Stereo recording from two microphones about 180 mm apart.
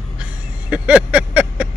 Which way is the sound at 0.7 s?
5° right (ahead or behind).